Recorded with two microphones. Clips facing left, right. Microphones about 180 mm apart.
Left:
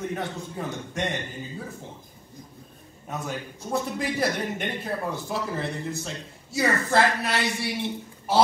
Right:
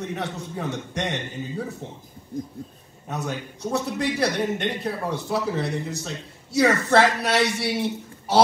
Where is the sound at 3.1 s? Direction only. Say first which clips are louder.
Right 2 dB; 75° right (ahead or behind).